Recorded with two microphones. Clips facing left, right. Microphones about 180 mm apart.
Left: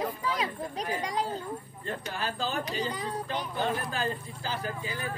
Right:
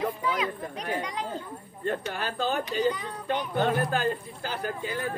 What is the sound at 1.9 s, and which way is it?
Speech, 55° right (ahead or behind).